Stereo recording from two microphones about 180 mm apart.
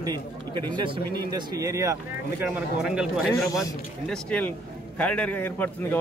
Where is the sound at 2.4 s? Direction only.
5° right (ahead or behind).